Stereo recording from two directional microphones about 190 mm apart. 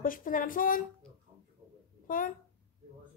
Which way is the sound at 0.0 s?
45° left (ahead or behind).